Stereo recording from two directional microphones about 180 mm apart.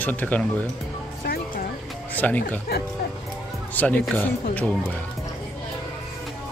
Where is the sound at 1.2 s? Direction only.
60° left (ahead or behind).